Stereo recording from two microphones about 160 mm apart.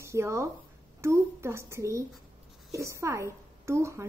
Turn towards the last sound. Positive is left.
turn(degrees=-15)  # may be behind; listen again after turning